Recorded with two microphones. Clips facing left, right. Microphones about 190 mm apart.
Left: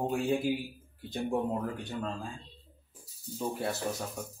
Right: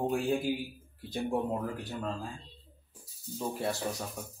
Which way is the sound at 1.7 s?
5° right (ahead or behind).